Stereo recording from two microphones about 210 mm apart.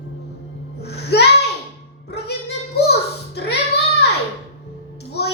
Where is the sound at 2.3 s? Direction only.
50° left (ahead or behind).